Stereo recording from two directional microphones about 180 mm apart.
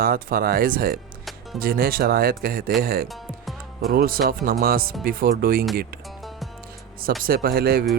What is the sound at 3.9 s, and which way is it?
Speech, 55° right (ahead or behind).